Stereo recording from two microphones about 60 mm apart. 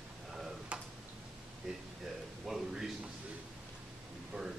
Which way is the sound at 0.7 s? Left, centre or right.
Right.